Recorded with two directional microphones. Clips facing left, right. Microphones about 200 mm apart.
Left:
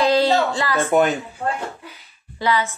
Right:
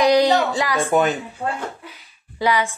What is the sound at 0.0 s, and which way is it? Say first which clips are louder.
Speech: right 1 dB; 15° right (ahead or behind).